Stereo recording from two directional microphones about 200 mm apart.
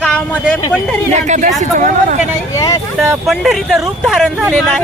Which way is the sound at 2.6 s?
15° left (ahead or behind).